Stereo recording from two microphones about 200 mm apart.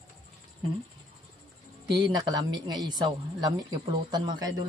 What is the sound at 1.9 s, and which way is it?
Speech, 20° right (ahead or behind).